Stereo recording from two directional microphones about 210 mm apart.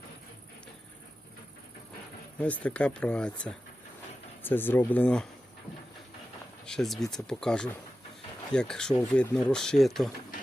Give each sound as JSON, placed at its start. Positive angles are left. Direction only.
{"t": 2.4, "sound": "speech", "side_deg": 5}
{"t": 6.7, "sound": "speech", "side_deg": 0}